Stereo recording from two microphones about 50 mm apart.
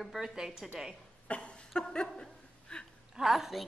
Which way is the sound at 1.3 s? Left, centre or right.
Left.